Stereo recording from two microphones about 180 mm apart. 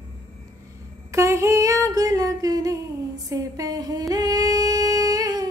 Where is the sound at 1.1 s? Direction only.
15° right (ahead or behind).